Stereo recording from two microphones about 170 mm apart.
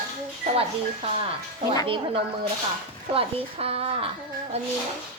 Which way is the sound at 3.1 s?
35° right (ahead or behind).